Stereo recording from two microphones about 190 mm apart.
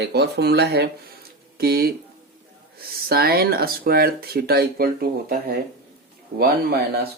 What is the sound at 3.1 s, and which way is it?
Speech, 55° right (ahead or behind).